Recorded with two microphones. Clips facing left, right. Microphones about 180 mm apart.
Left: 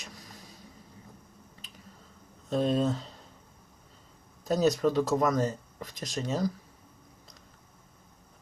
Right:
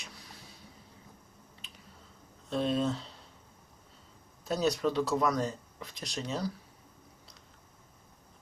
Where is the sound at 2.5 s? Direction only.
45° left (ahead or behind).